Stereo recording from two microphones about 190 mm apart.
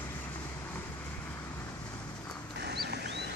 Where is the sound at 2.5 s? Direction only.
60° right (ahead or behind).